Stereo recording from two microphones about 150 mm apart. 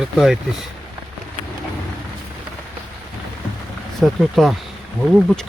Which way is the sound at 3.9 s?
Centre (ahead or behind).